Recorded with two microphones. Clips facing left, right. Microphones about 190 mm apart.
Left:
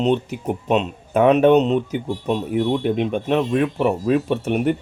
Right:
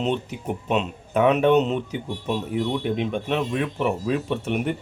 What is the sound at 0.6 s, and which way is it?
Speech, 40° left (ahead or behind).